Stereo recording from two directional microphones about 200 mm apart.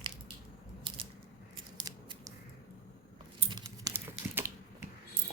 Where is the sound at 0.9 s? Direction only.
25° right (ahead or behind).